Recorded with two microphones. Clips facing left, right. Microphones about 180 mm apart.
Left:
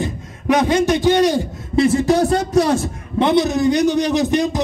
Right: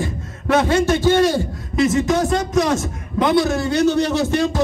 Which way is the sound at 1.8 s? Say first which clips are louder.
Left 3 dB; 35° left (ahead or behind).